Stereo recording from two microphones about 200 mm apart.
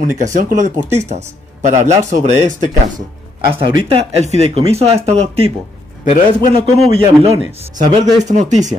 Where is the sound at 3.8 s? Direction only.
30° right (ahead or behind).